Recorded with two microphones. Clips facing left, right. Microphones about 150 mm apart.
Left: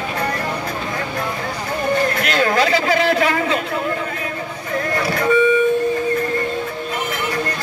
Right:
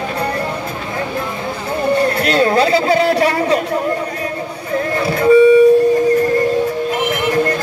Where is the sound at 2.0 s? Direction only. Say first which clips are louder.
Right 5 dB; 35° right (ahead or behind).